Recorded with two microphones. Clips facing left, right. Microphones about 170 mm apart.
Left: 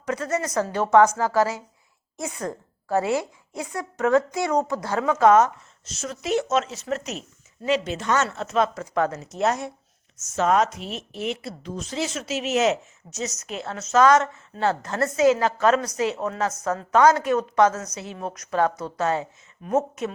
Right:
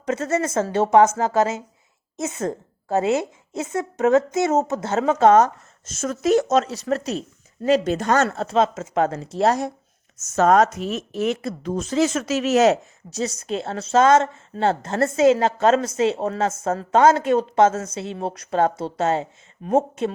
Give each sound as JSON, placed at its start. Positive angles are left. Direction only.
{"t": 0.1, "sound": "speech", "side_deg": -25}
{"t": 5.8, "sound": "speech", "side_deg": -50}